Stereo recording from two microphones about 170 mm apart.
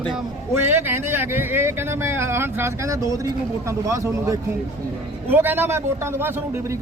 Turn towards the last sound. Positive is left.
turn(degrees=-15)  # may be behind; listen again after turning